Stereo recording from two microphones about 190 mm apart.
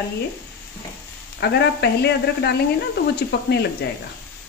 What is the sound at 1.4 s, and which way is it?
Speech, 60° left (ahead or behind).